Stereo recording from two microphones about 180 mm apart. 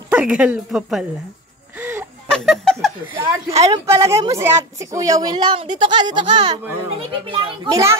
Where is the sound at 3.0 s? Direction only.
10° right (ahead or behind).